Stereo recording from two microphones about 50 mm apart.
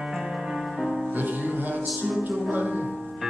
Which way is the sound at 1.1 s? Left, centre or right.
Right.